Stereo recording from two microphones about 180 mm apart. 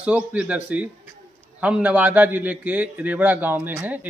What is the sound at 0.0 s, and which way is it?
A man's voice, 5° right (ahead or behind).